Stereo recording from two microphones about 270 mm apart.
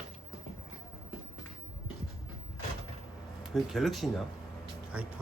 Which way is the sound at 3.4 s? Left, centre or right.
Centre.